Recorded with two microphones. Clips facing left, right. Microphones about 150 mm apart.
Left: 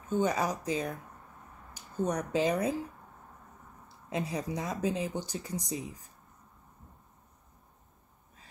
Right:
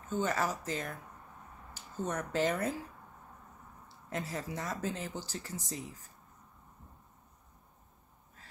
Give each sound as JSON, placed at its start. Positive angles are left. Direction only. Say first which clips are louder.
{"t": 0.1, "sound": "speech", "louder": "left 4 dB", "side_deg": 15}
{"t": 4.1, "sound": "speech", "louder": "left 4 dB", "side_deg": 20}